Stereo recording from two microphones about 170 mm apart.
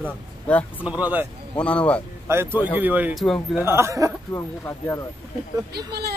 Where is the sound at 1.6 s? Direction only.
5° left (ahead or behind).